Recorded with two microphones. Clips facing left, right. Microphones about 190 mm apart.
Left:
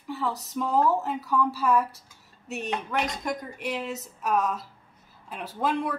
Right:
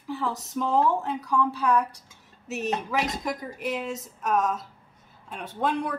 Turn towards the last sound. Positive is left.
turn(degrees=0)  # may be behind; listen again after turning